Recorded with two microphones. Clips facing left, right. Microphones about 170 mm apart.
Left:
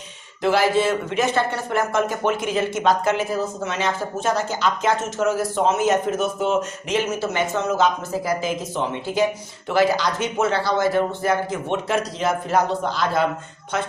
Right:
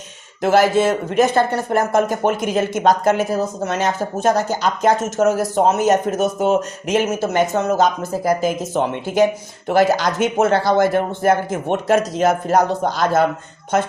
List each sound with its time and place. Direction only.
0.4 s speech: 45° right (ahead or behind)